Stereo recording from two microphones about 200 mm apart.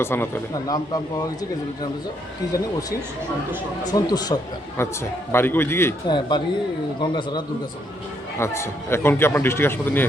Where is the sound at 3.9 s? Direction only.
20° left (ahead or behind).